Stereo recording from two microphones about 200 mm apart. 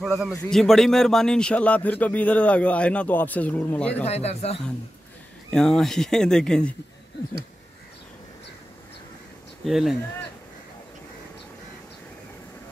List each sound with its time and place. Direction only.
0.0 s a man's voice: centre (ahead or behind)
4.0 s speech: 30° left (ahead or behind)
5.5 s speech: 5° left (ahead or behind)
9.7 s speech: centre (ahead or behind)